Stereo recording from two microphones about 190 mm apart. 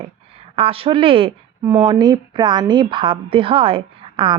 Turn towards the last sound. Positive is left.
turn(degrees=-25)  # may be behind; listen again after turning